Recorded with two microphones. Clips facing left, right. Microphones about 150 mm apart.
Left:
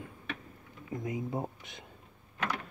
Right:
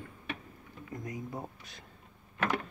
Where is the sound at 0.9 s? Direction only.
25° left (ahead or behind).